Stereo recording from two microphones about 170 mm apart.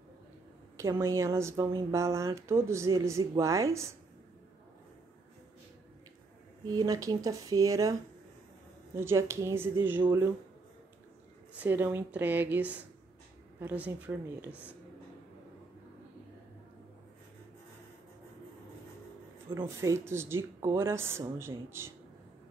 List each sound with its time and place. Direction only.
0.7 s speech: 15° right (ahead or behind)
6.7 s speech: 20° right (ahead or behind)
8.9 s speech: 15° right (ahead or behind)
11.5 s speech: 10° right (ahead or behind)
19.5 s speech: 15° right (ahead or behind)